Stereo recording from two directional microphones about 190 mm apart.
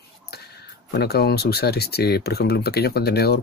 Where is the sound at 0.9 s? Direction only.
55° left (ahead or behind).